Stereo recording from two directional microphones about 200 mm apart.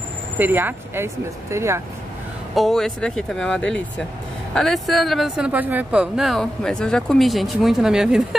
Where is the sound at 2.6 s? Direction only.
Centre (ahead or behind).